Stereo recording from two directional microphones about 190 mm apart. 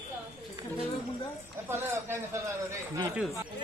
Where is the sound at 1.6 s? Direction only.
10° right (ahead or behind).